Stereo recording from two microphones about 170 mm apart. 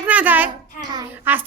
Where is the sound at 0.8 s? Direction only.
25° right (ahead or behind).